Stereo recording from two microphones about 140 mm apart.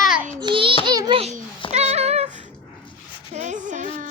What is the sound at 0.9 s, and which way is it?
Baby laughter, 30° right (ahead or behind).